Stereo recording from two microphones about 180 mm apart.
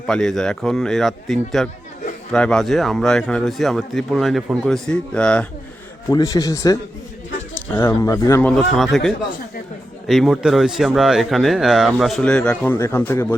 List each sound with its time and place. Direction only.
0.1 s speech: centre (ahead or behind)
6.1 s a man's voice: 20° left (ahead or behind)
7.8 s a man's voice: 15° left (ahead or behind)